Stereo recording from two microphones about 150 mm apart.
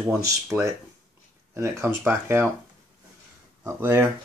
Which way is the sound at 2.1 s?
15° right (ahead or behind).